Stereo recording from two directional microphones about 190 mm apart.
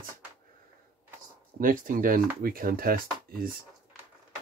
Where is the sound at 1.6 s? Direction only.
45° right (ahead or behind).